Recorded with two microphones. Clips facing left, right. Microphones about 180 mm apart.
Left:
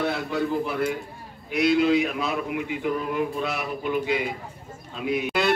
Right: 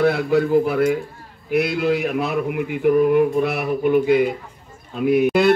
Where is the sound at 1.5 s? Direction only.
60° right (ahead or behind).